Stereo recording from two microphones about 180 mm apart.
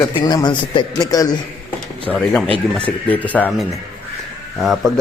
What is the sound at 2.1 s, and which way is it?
Speech, 5° left (ahead or behind).